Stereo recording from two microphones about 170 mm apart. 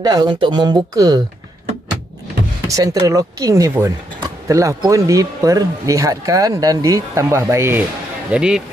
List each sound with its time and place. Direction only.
0.0 s speech: 25° right (ahead or behind)
2.7 s speech: 20° right (ahead or behind)
8.3 s speech: 5° right (ahead or behind)